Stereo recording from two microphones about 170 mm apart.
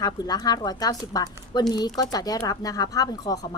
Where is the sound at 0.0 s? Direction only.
25° left (ahead or behind).